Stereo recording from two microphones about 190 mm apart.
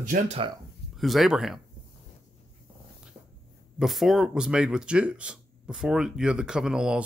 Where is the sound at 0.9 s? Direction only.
Centre (ahead or behind).